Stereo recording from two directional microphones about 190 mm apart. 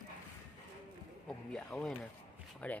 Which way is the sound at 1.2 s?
5° left (ahead or behind).